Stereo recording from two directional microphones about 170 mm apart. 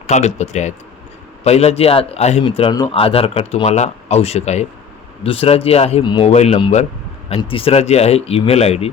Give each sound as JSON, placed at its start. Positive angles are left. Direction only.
{"t": 0.1, "sound": "speech", "side_deg": 45}